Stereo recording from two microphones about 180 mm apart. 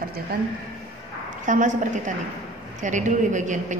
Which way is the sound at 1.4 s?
45° right (ahead or behind).